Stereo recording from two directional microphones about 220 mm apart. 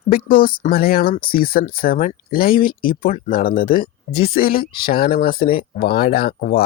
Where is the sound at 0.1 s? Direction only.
40° left (ahead or behind).